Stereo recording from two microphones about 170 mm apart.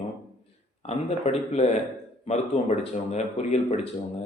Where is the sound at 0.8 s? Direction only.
40° left (ahead or behind).